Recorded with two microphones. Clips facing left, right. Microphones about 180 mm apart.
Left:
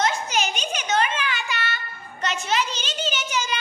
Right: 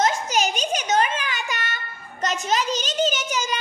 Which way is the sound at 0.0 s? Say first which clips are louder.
Right 2 dB; 40° right (ahead or behind).